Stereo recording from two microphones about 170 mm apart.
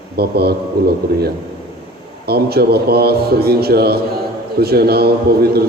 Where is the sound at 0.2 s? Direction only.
70° right (ahead or behind).